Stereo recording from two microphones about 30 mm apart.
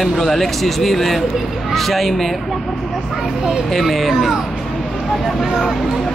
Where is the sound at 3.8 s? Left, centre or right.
Centre.